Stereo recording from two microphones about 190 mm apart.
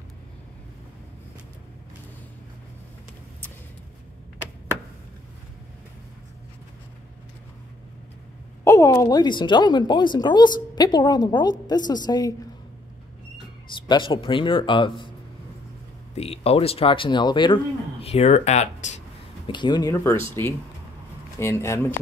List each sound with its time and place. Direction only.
8.6 s speech: 15° left (ahead or behind)
13.8 s speech: 25° left (ahead or behind)
16.2 s speech: 30° left (ahead or behind)
18.0 s speech: 35° left (ahead or behind)
19.4 s speech: 25° left (ahead or behind)